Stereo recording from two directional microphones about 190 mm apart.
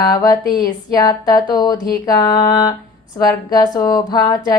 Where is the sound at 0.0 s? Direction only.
20° left (ahead or behind).